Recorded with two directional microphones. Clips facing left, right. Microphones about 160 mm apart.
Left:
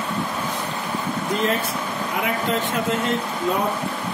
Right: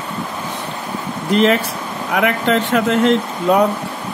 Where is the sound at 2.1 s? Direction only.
80° right.